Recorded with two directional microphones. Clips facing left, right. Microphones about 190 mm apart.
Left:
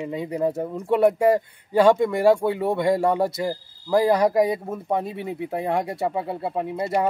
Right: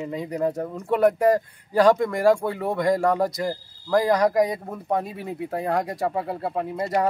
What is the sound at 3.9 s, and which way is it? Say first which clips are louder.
Speech: left 1 dB; 25° left (ahead or behind).